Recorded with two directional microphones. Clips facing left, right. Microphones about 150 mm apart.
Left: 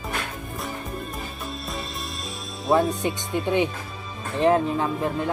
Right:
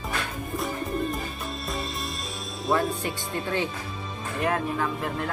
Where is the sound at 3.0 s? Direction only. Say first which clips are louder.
Left 4 dB; 20° left (ahead or behind).